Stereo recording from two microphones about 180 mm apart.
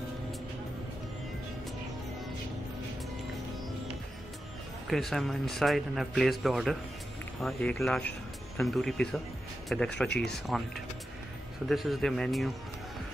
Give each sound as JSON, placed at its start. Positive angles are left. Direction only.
{"t": 4.8, "sound": "speech", "side_deg": 0}
{"t": 11.7, "sound": "speech", "side_deg": 0}